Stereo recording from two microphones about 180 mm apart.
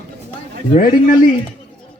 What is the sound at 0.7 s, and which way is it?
Speech, 50° left (ahead or behind).